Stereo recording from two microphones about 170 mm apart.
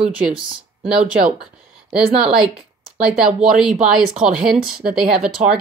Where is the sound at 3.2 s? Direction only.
5° right (ahead or behind).